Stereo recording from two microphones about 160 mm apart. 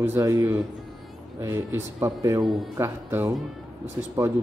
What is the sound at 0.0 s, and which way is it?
Speech, 15° right (ahead or behind).